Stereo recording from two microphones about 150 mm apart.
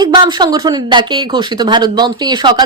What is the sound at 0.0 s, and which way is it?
Speech, 30° right (ahead or behind).